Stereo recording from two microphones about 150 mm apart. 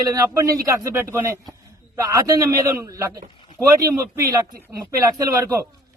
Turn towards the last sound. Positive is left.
turn(degrees=-20)  # may be behind; listen again after turning